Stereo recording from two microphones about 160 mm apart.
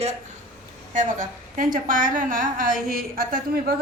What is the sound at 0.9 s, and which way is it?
A woman's voice, 55° right (ahead or behind).